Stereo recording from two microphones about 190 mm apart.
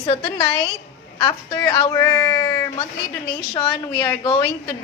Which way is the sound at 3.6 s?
20° left (ahead or behind).